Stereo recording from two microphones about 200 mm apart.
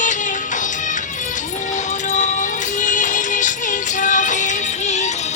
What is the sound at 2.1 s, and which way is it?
Music, 40° left (ahead or behind).